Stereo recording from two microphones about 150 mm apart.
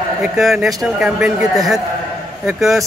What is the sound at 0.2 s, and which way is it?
A man's voice, 5° right (ahead or behind).